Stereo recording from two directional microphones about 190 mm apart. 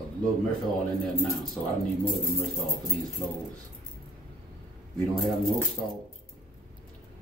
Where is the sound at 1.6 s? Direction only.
5° left (ahead or behind).